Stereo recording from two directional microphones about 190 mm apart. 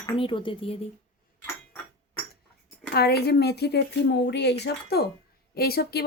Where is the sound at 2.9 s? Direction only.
55° left (ahead or behind).